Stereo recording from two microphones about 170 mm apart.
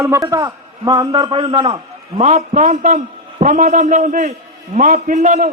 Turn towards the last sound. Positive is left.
turn(degrees=-45)  # may be behind; listen again after turning